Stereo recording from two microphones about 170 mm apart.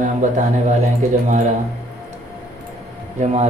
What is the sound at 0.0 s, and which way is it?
Speech, 45° right (ahead or behind).